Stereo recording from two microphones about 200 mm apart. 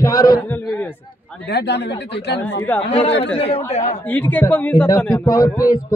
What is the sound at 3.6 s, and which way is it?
Speech, 35° left (ahead or behind).